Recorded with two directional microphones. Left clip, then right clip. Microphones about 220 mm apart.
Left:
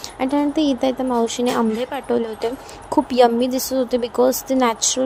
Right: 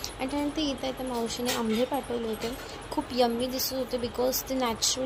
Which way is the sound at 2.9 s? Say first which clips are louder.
Left 12 dB; 40° left (ahead or behind).